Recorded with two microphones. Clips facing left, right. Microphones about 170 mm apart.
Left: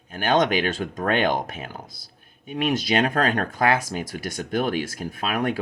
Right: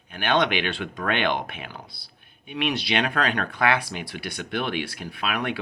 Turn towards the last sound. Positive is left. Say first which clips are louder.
# left 3 dB
turn(degrees=45)  # may be behind; listen again after turning